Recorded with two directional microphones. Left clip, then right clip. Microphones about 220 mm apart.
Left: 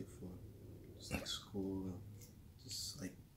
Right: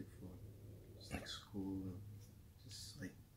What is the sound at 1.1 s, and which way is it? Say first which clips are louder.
Speech: left 4 dB; 15° left (ahead or behind).